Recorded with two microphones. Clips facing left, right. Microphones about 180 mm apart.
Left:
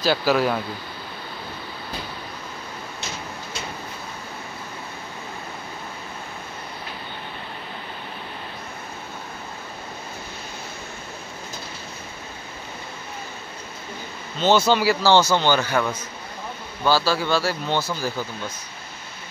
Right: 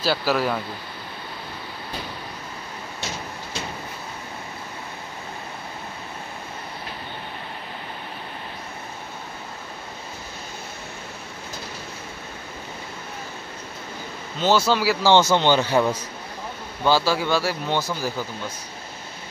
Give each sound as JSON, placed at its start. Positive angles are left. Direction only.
{"t": 0.0, "sound": "speech", "side_deg": -5}
{"t": 14.7, "sound": "speech", "side_deg": -5}
{"t": 15.0, "sound": "a man's voice", "side_deg": -20}
{"t": 16.8, "sound": "speech", "side_deg": -15}